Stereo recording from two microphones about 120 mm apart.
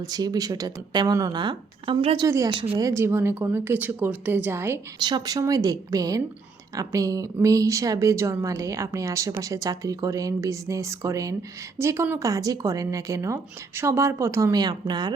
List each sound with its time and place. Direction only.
0.0 s a woman's voice: 30° right (ahead or behind)
4.9 s a woman's voice: 35° right (ahead or behind)